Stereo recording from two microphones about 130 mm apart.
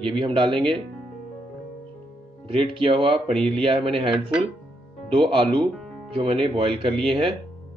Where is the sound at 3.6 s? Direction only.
45° right (ahead or behind).